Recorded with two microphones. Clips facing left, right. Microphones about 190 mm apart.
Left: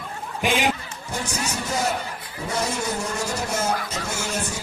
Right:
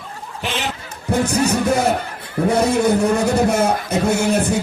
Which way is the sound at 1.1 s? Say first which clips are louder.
Right 12 dB; 60° right (ahead or behind).